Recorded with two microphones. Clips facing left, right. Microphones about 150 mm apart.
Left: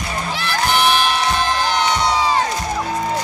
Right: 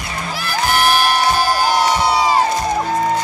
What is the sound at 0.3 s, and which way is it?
Crowd, 5° right (ahead or behind).